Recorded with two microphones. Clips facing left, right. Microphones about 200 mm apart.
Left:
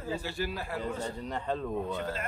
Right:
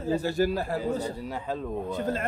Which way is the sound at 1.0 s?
5° right (ahead or behind).